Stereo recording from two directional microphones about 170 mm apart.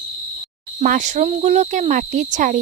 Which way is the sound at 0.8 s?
50° right (ahead or behind).